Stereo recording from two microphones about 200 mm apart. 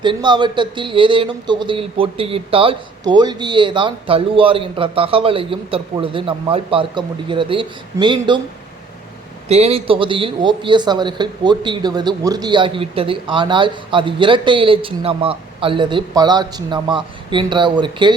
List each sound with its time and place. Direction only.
0.0 s a man's voice: 25° right (ahead or behind)
9.5 s a man's voice: 30° right (ahead or behind)